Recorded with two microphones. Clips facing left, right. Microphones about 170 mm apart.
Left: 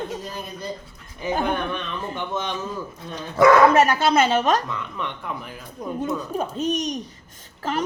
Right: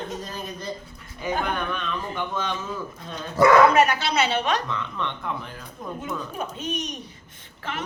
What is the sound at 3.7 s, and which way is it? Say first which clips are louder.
Speech: left 3 dB; 45° left (ahead or behind).